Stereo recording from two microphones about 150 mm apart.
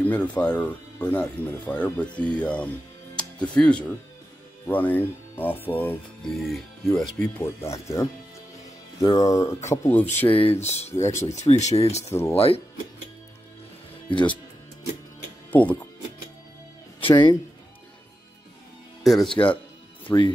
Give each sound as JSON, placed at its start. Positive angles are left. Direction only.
{"t": 0.0, "sound": "speech", "side_deg": 10}
{"t": 3.2, "sound": "music", "side_deg": 5}
{"t": 4.6, "sound": "speech", "side_deg": 10}
{"t": 6.3, "sound": "speech", "side_deg": 0}
{"t": 7.6, "sound": "speech", "side_deg": 20}
{"t": 10.0, "sound": "speech", "side_deg": 35}
{"t": 12.0, "sound": "speech", "side_deg": 15}
{"t": 12.4, "sound": "speech", "side_deg": 40}
{"t": 15.5, "sound": "speech", "side_deg": 10}
{"t": 17.1, "sound": "speech", "side_deg": 20}
{"t": 19.0, "sound": "speech", "side_deg": 0}
{"t": 20.1, "sound": "speech", "side_deg": 30}